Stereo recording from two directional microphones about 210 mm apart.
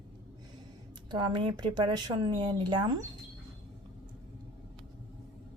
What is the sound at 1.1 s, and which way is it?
Speech, 20° right (ahead or behind).